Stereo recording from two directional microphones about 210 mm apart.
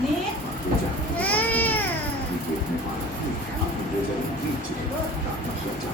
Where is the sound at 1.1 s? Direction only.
5° left (ahead or behind).